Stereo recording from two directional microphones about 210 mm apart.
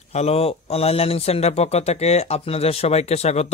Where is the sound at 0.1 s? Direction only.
30° left (ahead or behind).